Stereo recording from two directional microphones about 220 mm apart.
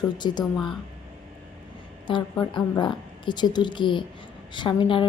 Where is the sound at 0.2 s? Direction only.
20° left (ahead or behind).